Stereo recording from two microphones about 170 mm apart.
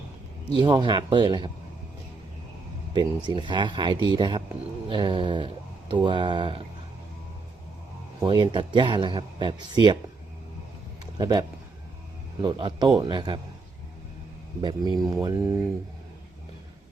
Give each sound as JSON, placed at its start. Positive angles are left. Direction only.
{"t": 0.5, "sound": "speech", "side_deg": -25}
{"t": 3.2, "sound": "speech", "side_deg": -25}
{"t": 8.2, "sound": "speech", "side_deg": -25}
{"t": 11.2, "sound": "speech", "side_deg": -25}
{"t": 14.6, "sound": "speech", "side_deg": -25}